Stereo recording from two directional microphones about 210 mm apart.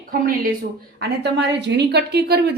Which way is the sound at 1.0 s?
55° right (ahead or behind).